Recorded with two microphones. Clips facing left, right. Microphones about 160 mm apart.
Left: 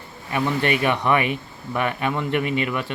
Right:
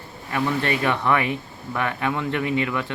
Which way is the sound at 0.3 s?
15° left (ahead or behind).